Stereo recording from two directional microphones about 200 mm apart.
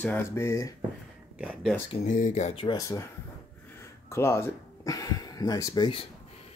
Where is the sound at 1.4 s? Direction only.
5° right (ahead or behind).